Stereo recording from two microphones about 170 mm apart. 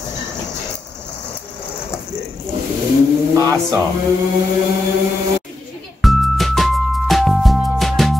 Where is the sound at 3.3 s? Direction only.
20° right (ahead or behind).